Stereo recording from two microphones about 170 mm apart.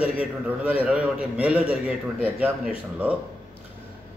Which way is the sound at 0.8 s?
5° right (ahead or behind).